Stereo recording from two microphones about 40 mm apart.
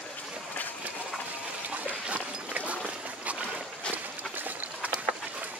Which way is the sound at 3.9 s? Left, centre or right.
Right.